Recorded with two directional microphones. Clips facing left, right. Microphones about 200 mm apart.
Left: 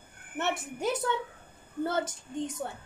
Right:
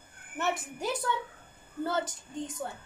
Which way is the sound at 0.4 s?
20° left (ahead or behind).